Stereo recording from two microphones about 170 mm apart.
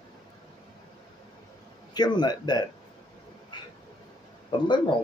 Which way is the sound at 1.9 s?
25° left (ahead or behind).